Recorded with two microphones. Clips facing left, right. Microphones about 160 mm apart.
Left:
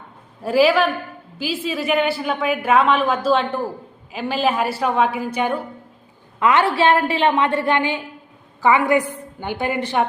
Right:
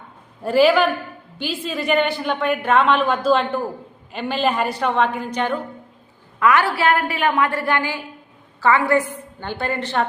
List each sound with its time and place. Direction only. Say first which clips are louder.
0.4 s a woman's voice: right 1 dB; centre (ahead or behind)
6.4 s a woman's voice: left 1 dB; 25° left (ahead or behind)